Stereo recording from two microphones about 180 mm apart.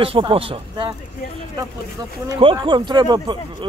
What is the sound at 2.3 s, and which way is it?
Speech, 30° right (ahead or behind).